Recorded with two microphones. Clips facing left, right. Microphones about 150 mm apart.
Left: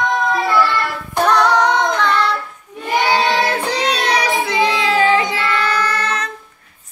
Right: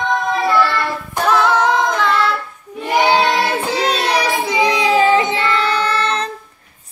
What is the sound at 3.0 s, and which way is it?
Child singing, 5° right (ahead or behind).